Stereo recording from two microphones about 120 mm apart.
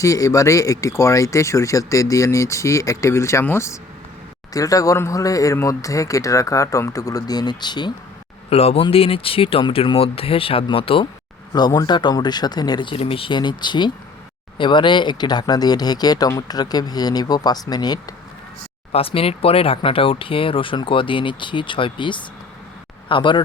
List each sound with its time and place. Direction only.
0.0 s speech: 25° left (ahead or behind)
8.4 s speech: 55° left (ahead or behind)
11.5 s speech: 35° left (ahead or behind)
18.9 s speech: 55° left (ahead or behind)